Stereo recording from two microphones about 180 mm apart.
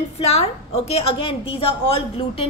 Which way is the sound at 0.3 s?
35° left (ahead or behind).